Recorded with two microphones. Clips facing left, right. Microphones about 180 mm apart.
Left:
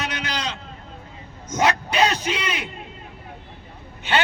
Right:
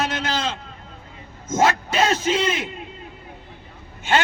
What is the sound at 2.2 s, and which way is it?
Speech, 25° right (ahead or behind).